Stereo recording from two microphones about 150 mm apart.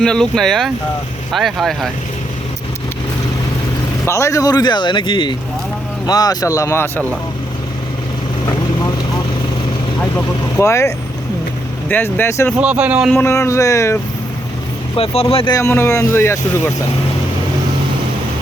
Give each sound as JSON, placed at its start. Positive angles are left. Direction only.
{"t": 0.0, "sound": "speech", "side_deg": 5}
{"t": 4.0, "sound": "speech", "side_deg": 20}
{"t": 8.4, "sound": "vehicle", "side_deg": 25}
{"t": 10.0, "sound": "speech", "side_deg": 15}
{"t": 12.5, "sound": "a man's voice", "side_deg": -10}
{"t": 13.1, "sound": "speech", "side_deg": 15}
{"t": 14.9, "sound": "speech", "side_deg": 40}
{"t": 15.5, "sound": "speech", "side_deg": 15}